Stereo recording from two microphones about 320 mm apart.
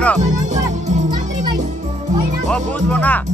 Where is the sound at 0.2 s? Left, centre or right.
Right.